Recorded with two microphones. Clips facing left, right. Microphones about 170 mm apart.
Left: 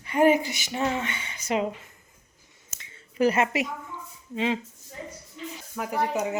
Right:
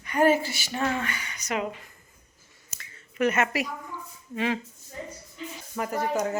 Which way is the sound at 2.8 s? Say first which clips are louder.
Left 2 dB; 30° left (ahead or behind).